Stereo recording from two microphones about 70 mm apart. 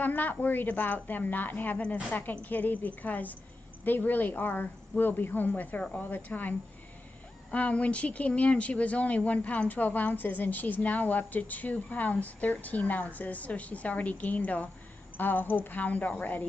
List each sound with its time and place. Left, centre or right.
0.0 s speech: left
7.5 s speech: centre